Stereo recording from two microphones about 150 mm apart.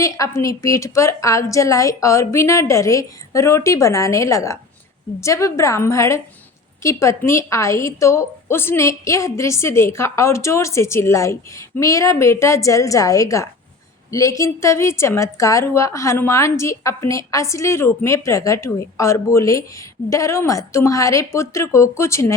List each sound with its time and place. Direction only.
0.0 s a woman's voice: 20° left (ahead or behind)